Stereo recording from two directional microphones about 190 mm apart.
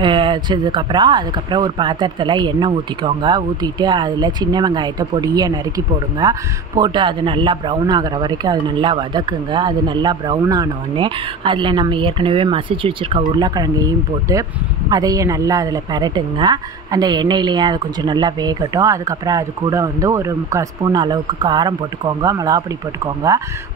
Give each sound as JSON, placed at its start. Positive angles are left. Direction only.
{"t": 0.0, "sound": "speech", "side_deg": -25}